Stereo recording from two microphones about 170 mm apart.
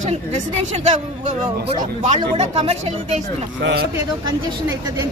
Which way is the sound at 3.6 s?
90° right.